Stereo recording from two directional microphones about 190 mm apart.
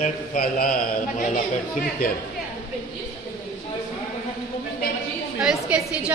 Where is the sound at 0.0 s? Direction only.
45° left (ahead or behind).